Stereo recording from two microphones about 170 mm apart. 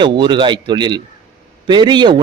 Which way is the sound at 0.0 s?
30° right (ahead or behind).